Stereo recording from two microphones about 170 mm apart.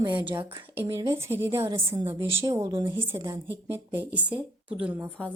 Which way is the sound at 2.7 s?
30° right (ahead or behind).